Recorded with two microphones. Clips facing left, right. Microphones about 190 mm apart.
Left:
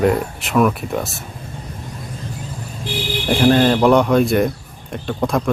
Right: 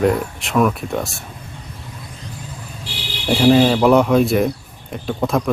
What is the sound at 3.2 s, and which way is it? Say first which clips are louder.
Speech: right 1 dB; centre (ahead or behind).